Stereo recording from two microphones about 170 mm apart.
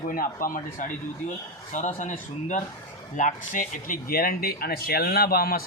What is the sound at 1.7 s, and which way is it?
Speech, 45° left (ahead or behind).